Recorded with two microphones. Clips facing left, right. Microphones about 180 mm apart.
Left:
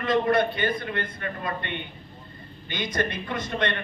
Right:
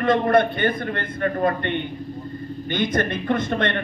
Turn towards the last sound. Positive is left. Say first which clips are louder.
# right 5 dB
turn(degrees=-50)  # may be behind; listen again after turning